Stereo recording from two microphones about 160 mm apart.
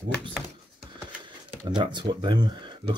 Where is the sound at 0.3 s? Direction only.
5° right (ahead or behind).